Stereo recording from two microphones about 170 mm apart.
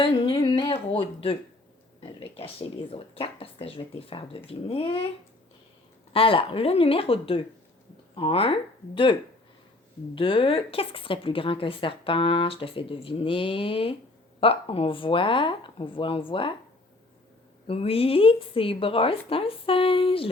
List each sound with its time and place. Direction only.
0.0 s a sound: 35° left (ahead or behind)
2.0 s a woman's voice: 35° left (ahead or behind)
6.1 s a woman's voice: 30° left (ahead or behind)
10.2 s a woman's voice: 30° left (ahead or behind)
17.7 s a woman's voice: 35° left (ahead or behind)